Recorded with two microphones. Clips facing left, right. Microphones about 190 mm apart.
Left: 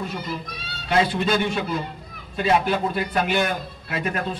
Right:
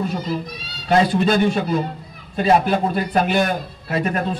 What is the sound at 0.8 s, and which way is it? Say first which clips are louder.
A man's voice: right 5 dB; 40° right (ahead or behind).